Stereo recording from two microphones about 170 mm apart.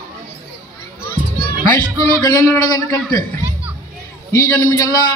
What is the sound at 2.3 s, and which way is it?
Speech, 15° left (ahead or behind).